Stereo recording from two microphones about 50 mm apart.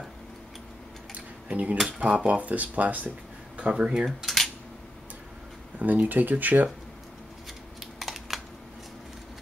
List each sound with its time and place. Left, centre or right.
1.1 s a sound: right
1.9 s speech: right
3.5 s speech: right
4.2 s dishes: centre
5.8 s speech: right
7.8 s typing: centre